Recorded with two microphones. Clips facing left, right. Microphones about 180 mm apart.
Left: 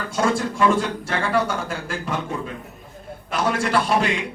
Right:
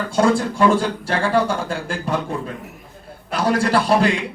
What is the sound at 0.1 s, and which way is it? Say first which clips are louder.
A man's voice: right 4 dB; 30° right (ahead or behind).